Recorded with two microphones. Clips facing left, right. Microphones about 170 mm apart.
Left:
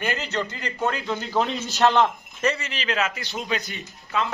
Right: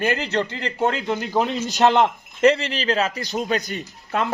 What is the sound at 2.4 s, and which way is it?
Speech, 65° right (ahead or behind).